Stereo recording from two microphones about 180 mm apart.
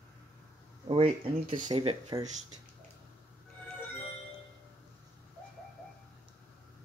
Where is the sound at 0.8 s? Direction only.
30° right (ahead or behind).